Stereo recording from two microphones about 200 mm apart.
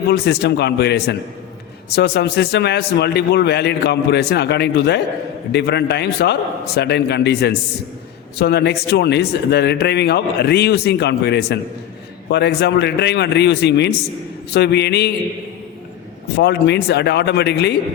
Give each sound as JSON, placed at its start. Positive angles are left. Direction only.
{"t": 0.1, "sound": "speech", "side_deg": 55}
{"t": 16.4, "sound": "speech", "side_deg": 55}